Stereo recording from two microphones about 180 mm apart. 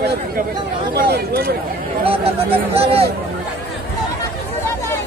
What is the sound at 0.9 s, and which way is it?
Speech, 60° right (ahead or behind).